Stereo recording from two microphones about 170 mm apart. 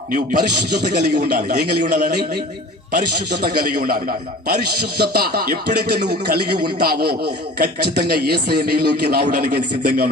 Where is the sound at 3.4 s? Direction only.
60° right (ahead or behind); by 6.4 s 75° right (ahead or behind).